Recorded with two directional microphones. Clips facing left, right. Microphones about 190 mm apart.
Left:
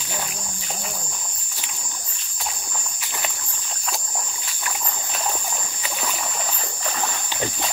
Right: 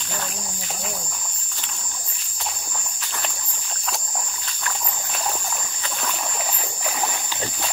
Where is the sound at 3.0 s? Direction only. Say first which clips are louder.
Left 1 dB; 10° left (ahead or behind).